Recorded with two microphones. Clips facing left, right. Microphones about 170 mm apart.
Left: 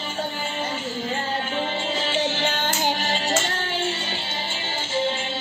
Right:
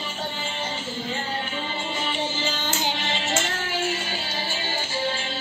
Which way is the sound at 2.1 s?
75° left (ahead or behind).